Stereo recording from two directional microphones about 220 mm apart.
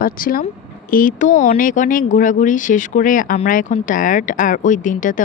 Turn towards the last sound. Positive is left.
turn(degrees=35)  # may be behind; listen again after turning